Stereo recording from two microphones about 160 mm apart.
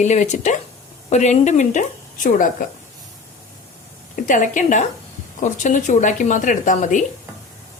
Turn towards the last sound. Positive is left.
turn(degrees=55)  # may be behind; listen again after turning